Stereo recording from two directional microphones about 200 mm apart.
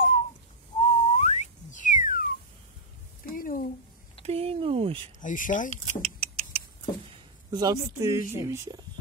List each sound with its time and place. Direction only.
0.7 s whistling: 35° left (ahead or behind)
3.3 s a sound: 45° left (ahead or behind)
4.2 s a sound: 30° right (ahead or behind)
5.2 s speech: 40° left (ahead or behind)
5.7 s vehicle: 30° right (ahead or behind)
7.5 s speech: 20° right (ahead or behind)